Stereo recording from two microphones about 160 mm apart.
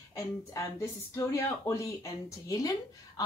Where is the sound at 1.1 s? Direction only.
20° left (ahead or behind).